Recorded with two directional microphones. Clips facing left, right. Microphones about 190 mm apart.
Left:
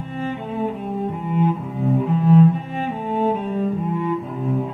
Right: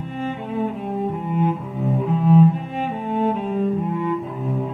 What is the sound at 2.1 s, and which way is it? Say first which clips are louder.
Cello: even; centre (ahead or behind).